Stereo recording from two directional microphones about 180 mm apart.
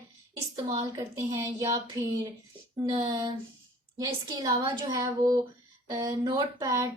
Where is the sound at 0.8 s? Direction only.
15° right (ahead or behind).